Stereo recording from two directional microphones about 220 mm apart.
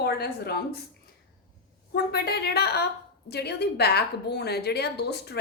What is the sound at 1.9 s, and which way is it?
A woman's voice, 45° left (ahead or behind).